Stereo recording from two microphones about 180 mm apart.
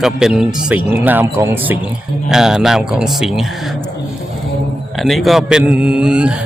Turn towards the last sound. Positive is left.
turn(degrees=-5)  # may be behind; listen again after turning